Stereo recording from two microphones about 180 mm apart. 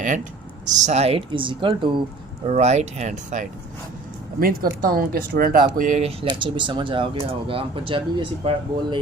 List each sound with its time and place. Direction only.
0.8 s speech: 40° right (ahead or behind)
2.5 s speech: 40° right (ahead or behind)
4.4 s speech: 55° right (ahead or behind); by 9.0 s 30° right (ahead or behind)